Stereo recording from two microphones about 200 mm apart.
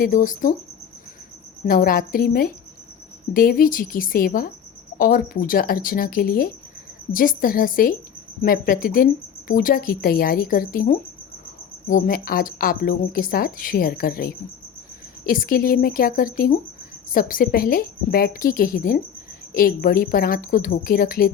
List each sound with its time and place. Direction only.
0.0 s a woman's voice: 40° left (ahead or behind)
1.6 s a woman's voice: 45° left (ahead or behind)